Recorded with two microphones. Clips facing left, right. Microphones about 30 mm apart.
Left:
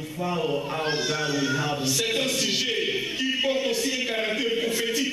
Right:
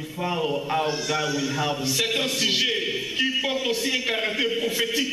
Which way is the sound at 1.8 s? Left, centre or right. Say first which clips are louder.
Right 1 dB; centre.